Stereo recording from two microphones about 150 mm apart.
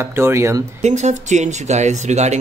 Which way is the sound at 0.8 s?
50° right (ahead or behind).